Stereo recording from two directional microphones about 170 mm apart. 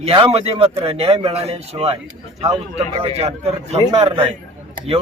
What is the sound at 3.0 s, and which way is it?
A man's voice, 35° right (ahead or behind).